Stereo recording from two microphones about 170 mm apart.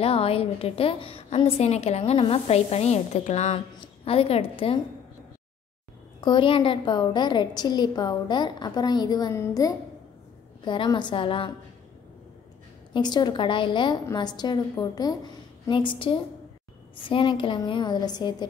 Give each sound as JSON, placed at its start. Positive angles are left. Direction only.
{"t": 0.0, "sound": "a woman's voice", "side_deg": 35}
{"t": 6.2, "sound": "a woman's voice", "side_deg": 30}
{"t": 12.9, "sound": "a woman's voice", "side_deg": 25}